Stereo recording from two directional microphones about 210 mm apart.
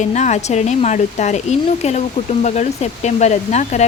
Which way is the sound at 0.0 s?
35° left (ahead or behind).